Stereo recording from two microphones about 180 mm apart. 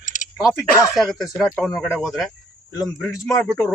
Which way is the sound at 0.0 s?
45° left (ahead or behind).